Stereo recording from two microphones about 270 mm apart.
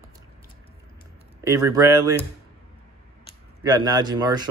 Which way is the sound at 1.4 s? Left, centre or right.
Centre.